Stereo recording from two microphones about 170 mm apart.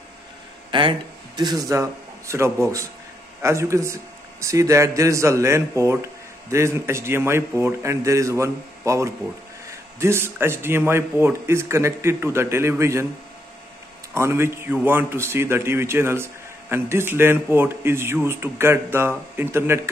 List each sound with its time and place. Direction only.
0.7 s a man's voice: 30° right (ahead or behind)
14.1 s a man's voice: 15° right (ahead or behind)